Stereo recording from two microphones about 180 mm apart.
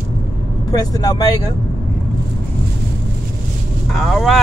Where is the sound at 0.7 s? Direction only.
20° left (ahead or behind).